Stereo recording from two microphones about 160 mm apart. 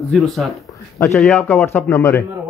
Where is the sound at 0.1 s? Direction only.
Centre (ahead or behind); by 2.2 s 20° left (ahead or behind).